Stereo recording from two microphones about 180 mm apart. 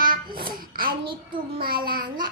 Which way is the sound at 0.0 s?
55° right (ahead or behind).